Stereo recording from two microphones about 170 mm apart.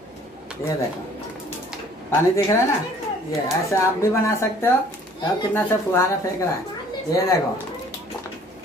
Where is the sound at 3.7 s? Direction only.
15° left (ahead or behind).